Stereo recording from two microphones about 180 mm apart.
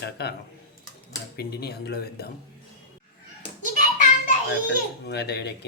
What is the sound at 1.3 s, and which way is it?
Speech, 60° left (ahead or behind).